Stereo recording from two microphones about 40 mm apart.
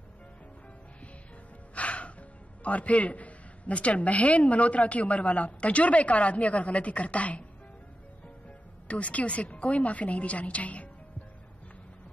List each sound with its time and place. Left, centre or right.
1.8 s speech: left
8.5 s speech: left